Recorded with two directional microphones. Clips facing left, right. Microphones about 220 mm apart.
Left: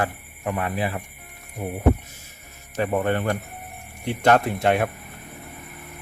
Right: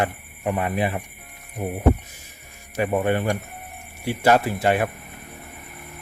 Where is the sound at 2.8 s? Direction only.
10° right (ahead or behind).